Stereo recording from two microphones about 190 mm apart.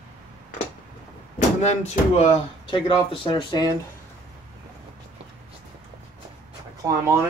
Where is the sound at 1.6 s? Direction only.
35° left (ahead or behind).